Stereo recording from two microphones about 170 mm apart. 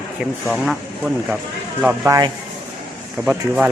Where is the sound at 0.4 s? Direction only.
5° right (ahead or behind).